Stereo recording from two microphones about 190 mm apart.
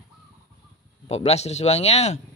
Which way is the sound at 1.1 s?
35° left (ahead or behind).